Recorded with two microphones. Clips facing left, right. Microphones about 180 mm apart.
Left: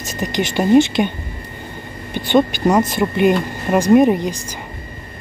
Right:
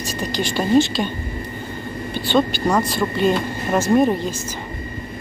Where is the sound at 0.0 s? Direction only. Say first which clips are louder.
Left 2 dB; 20° left (ahead or behind).